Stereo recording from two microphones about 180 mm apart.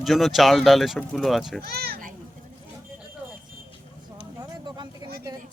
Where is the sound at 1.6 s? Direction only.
60° right (ahead or behind).